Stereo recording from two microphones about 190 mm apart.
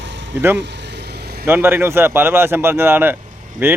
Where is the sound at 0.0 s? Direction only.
70° right (ahead or behind).